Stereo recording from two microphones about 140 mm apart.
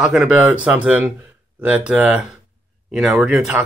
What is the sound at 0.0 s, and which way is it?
Speech, 5° right (ahead or behind).